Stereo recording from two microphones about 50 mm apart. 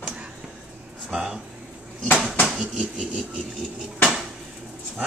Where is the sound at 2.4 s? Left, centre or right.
Centre.